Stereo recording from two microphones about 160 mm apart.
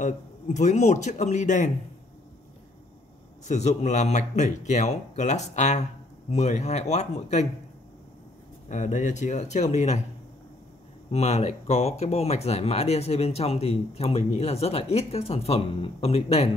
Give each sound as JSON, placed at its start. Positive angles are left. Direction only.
{"t": 0.0, "sound": "speech", "side_deg": 45}
{"t": 3.4, "sound": "speech", "side_deg": 45}
{"t": 8.6, "sound": "speech", "side_deg": 50}
{"t": 11.1, "sound": "speech", "side_deg": 40}